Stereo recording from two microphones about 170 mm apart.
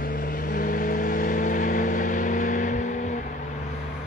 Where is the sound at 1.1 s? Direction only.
50° left (ahead or behind).